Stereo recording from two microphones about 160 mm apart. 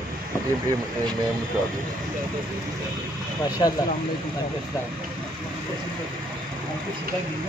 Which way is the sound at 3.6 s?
25° left (ahead or behind).